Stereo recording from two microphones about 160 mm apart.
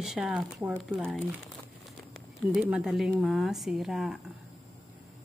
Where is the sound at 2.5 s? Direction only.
5° right (ahead or behind).